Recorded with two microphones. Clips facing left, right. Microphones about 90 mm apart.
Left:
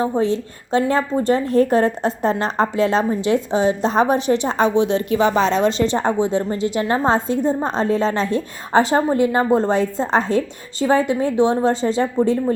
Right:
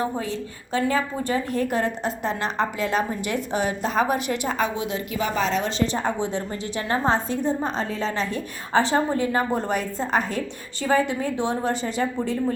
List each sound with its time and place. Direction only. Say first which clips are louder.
0.0 s a woman's voice: left 8 dB; 25° left (ahead or behind)
8.7 s a woman's voice: left 5 dB; 20° left (ahead or behind)